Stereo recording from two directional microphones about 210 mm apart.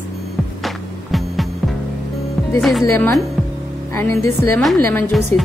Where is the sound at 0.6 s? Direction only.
Centre (ahead or behind).